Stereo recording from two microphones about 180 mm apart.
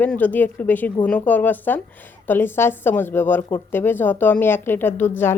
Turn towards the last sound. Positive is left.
turn(degrees=10)  # may be behind; listen again after turning